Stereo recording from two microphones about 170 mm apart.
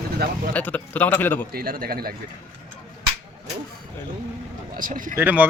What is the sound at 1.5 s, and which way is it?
Speech, 60° right (ahead or behind).